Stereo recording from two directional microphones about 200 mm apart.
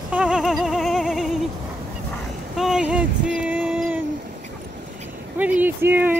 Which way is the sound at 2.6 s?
5° right (ahead or behind).